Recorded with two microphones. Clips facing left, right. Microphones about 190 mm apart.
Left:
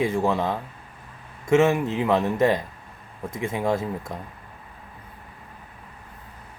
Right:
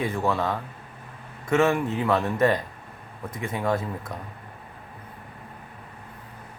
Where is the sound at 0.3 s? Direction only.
25° left (ahead or behind).